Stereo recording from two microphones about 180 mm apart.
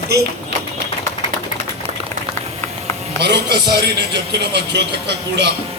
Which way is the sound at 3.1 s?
70° right (ahead or behind).